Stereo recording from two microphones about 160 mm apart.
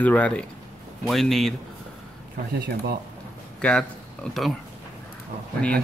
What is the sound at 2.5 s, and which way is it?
Speech, 90° right.